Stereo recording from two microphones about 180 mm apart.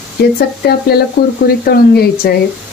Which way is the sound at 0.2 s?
60° left (ahead or behind).